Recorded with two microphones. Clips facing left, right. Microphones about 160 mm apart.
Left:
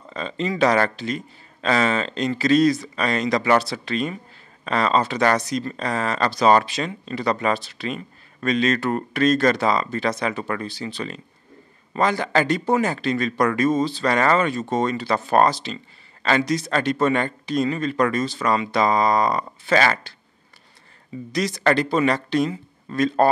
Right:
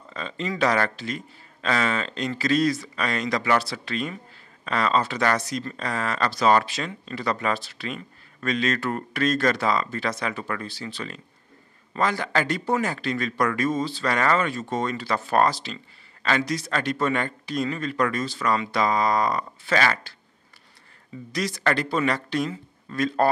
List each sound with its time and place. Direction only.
0.1 s speech: 25° left (ahead or behind)
21.3 s speech: 20° left (ahead or behind)